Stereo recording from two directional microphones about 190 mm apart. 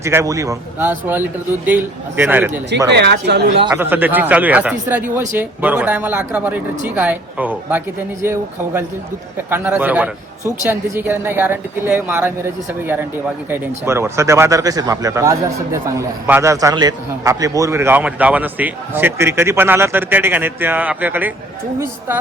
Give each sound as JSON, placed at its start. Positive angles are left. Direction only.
{"t": 0.0, "sound": "speech", "side_deg": -15}
{"t": 2.9, "sound": "speech", "side_deg": -60}
{"t": 3.8, "sound": "speech", "side_deg": -10}
{"t": 13.5, "sound": "speech", "side_deg": -15}